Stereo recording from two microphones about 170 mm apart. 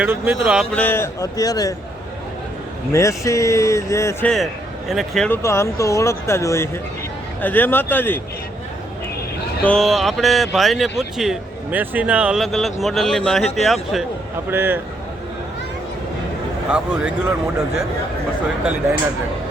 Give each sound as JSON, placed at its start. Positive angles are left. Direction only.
{"t": 0.0, "sound": "speech", "side_deg": -10}
{"t": 0.7, "sound": "speech", "side_deg": 10}
{"t": 2.9, "sound": "speech", "side_deg": 20}
{"t": 4.9, "sound": "speech", "side_deg": 0}
{"t": 5.3, "sound": "speech", "side_deg": 15}
{"t": 9.6, "sound": "speech", "side_deg": 5}
{"t": 16.7, "sound": "speech", "side_deg": -5}